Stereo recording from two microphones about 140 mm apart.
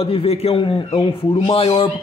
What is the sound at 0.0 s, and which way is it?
A man's voice, 45° left (ahead or behind).